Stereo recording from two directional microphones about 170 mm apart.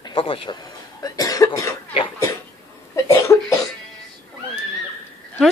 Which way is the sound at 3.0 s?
15° left (ahead or behind).